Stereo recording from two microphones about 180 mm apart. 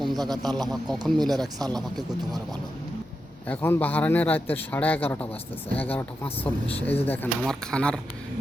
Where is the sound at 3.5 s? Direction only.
10° left (ahead or behind).